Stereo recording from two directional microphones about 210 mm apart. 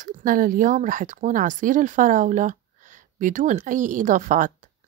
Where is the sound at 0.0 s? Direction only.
40° right (ahead or behind).